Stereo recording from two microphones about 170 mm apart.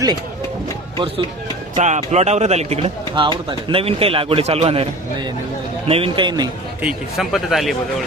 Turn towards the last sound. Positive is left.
turn(degrees=0)  # may be behind; listen again after turning